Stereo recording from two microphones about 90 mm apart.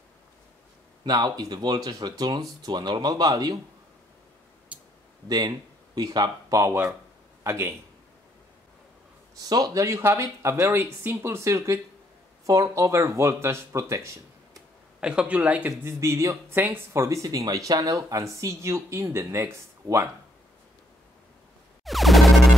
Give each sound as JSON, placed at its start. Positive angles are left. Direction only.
{"t": 1.0, "sound": "speech", "side_deg": -50}
{"t": 4.7, "sound": "a sound", "side_deg": -15}
{"t": 5.3, "sound": "speech", "side_deg": -50}
{"t": 6.6, "sound": "speech", "side_deg": -30}
{"t": 9.3, "sound": "speech", "side_deg": -45}
{"t": 15.0, "sound": "speech", "side_deg": -10}
{"t": 15.8, "sound": "speech", "side_deg": -30}
{"t": 21.8, "sound": "music", "side_deg": 0}